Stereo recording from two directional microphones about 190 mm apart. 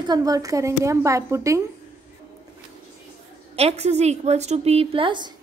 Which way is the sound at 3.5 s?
35° right (ahead or behind).